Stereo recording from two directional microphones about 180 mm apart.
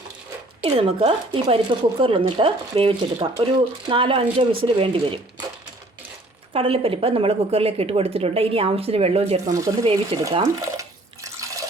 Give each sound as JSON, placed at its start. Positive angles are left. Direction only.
{"t": 0.6, "sound": "a woman's voice", "side_deg": -30}
{"t": 6.5, "sound": "a woman's voice", "side_deg": -30}
{"t": 9.5, "sound": "speech", "side_deg": -15}
{"t": 9.8, "sound": "a woman's voice", "side_deg": -30}
{"t": 10.2, "sound": "water", "side_deg": -20}